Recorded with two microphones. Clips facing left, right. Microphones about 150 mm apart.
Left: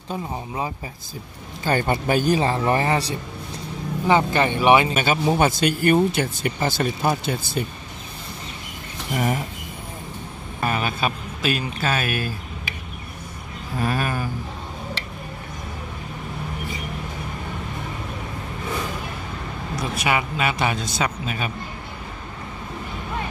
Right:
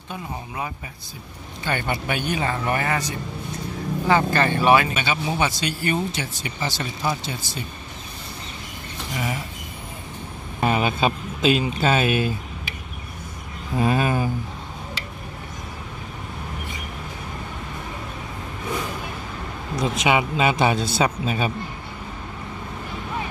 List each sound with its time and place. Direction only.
1.6 s a man's voice: 40° left (ahead or behind)
4.1 s speech: 20° left (ahead or behind)
4.9 s speech: 45° left (ahead or behind)
9.1 s speech: 50° left (ahead or behind)
10.6 s speech: 20° right (ahead or behind)
13.7 s a man's voice: 20° right (ahead or behind)
19.7 s a man's voice: 20° right (ahead or behind)